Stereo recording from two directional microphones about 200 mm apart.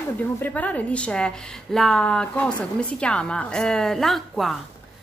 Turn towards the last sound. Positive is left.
turn(degrees=0)  # may be behind; listen again after turning